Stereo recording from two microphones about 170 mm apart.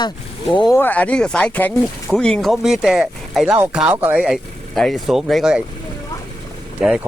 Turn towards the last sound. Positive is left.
turn(degrees=-5)  # may be behind; listen again after turning